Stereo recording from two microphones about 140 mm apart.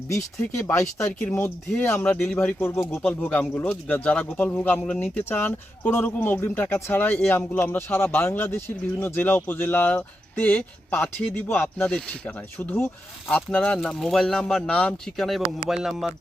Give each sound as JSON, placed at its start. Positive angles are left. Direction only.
{"t": 0.1, "sound": "speech", "side_deg": 20}